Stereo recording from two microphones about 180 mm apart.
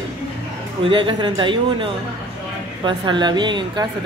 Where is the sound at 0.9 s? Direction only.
25° right (ahead or behind).